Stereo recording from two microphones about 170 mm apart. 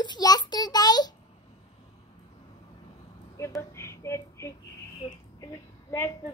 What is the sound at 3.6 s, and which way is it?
Speech, 15° left (ahead or behind).